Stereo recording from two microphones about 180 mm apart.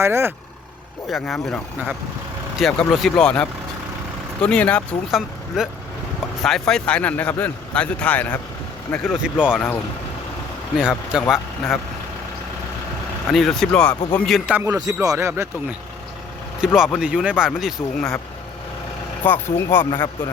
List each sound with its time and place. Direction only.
0.0 s speech: 15° right (ahead or behind)
1.1 s a man's voice: centre (ahead or behind)
9.2 s speech: 5° right (ahead or behind)
10.8 s speech: 5° right (ahead or behind)
13.3 s speech: centre (ahead or behind); by 15.4 s 15° right (ahead or behind)
16.6 s speech: 5° right (ahead or behind)
19.2 s a man's voice: 10° left (ahead or behind)
19.8 s speech: 25° left (ahead or behind)